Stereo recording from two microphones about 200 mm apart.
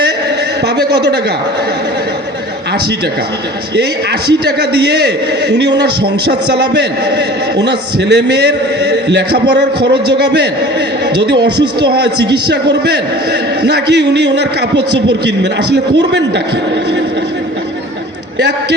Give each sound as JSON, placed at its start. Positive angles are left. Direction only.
{"t": 0.6, "sound": "a man's voice", "side_deg": -55}
{"t": 4.3, "sound": "a man's voice", "side_deg": -55}
{"t": 13.6, "sound": "a man's voice", "side_deg": -55}